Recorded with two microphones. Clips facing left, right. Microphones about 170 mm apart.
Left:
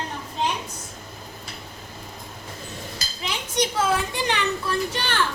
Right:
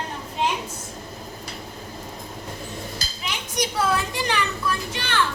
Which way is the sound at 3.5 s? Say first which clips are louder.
Left 1 dB; 25° left (ahead or behind).